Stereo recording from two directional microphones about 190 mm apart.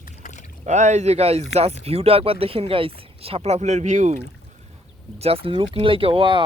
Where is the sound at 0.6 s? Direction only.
40° right (ahead or behind).